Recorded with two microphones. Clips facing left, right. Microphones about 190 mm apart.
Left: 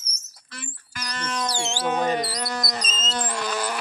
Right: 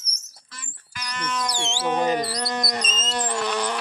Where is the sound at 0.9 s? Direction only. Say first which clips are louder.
Right 1 dB; 35° left (ahead or behind).